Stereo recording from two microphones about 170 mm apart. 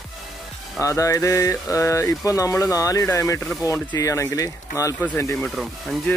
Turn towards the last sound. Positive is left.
turn(degrees=0)  # may be behind; listen again after turning